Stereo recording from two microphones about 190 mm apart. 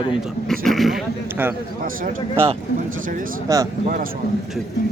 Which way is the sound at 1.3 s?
10° right (ahead or behind).